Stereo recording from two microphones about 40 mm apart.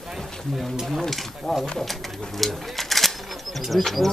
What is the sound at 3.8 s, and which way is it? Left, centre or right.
Speech, centre.